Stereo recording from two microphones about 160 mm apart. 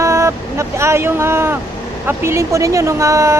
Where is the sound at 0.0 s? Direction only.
20° right (ahead or behind).